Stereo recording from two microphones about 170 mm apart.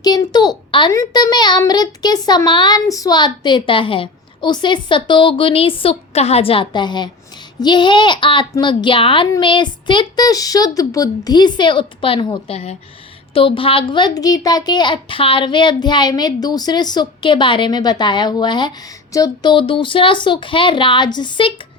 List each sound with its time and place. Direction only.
0.0 s a child's voice: 25° left (ahead or behind)